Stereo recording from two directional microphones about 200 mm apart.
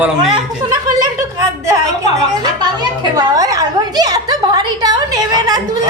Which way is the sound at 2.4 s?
20° right (ahead or behind).